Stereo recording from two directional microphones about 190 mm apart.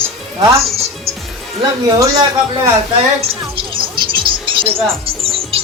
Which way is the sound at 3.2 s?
30° right (ahead or behind).